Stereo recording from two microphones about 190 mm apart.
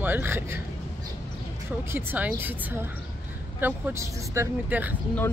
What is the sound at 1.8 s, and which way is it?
Speech, 10° right (ahead or behind).